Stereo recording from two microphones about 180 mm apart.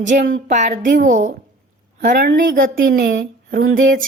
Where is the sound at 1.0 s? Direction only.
45° right (ahead or behind).